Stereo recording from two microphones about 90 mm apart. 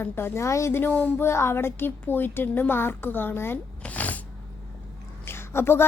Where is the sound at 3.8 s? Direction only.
15° left (ahead or behind).